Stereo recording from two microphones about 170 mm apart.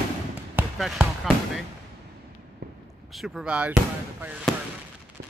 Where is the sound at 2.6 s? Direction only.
65° right (ahead or behind).